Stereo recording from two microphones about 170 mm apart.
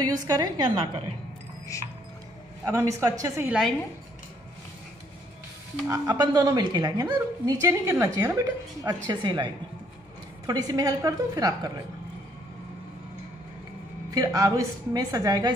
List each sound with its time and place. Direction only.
0.0 s a woman's voice: 20° right (ahead or behind)
1.7 s music: 20° left (ahead or behind)
2.6 s a woman's voice: 15° right (ahead or behind)
3.4 s a woman's voice: 5° right (ahead or behind)
5.9 s a woman's voice: 20° right (ahead or behind)
14.1 s a woman's voice: 20° right (ahead or behind)